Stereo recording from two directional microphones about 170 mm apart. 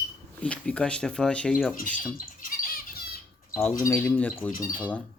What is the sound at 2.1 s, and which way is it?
Squawk, 60° left (ahead or behind).